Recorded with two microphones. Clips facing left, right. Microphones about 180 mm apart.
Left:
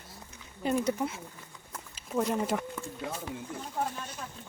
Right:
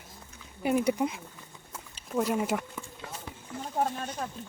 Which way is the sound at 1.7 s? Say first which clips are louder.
Right 1 dB; 5° right (ahead or behind).